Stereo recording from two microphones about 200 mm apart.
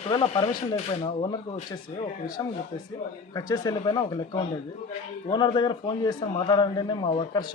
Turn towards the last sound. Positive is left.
turn(degrees=25)  # may be behind; listen again after turning